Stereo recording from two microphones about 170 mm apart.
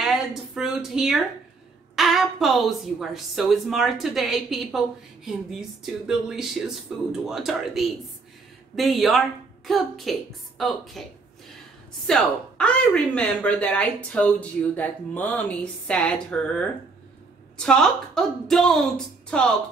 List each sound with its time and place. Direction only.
0.0 s a woman's voice: centre (ahead or behind)
12.1 s a woman's voice: 5° left (ahead or behind)